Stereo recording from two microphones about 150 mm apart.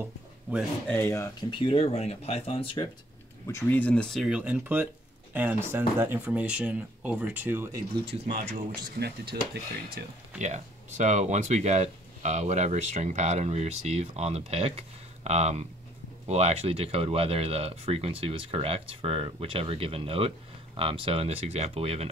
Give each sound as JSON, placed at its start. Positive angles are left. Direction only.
{"t": 0.8, "sound": "speech", "side_deg": 15}
{"t": 1.4, "sound": "speech", "side_deg": 35}
{"t": 3.4, "sound": "speech", "side_deg": 15}
{"t": 9.0, "sound": "speech", "side_deg": -90}
{"t": 10.4, "sound": "speech", "side_deg": -50}